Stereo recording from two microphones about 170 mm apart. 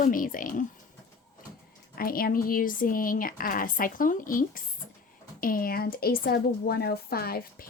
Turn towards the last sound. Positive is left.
turn(degrees=65)  # may be behind; listen again after turning